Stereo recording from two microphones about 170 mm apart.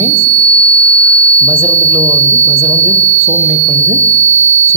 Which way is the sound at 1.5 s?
30° right (ahead or behind).